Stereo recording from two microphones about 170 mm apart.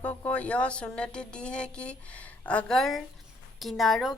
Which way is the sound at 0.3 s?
10° left (ahead or behind).